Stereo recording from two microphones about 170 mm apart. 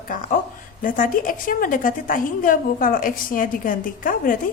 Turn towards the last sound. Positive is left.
turn(degrees=55)  # may be behind; listen again after turning